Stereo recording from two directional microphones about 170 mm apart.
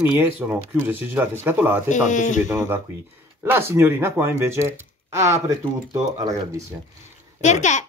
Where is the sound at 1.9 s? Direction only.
45° left (ahead or behind).